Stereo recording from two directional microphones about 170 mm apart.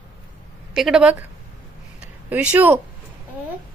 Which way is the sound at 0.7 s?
5° right (ahead or behind).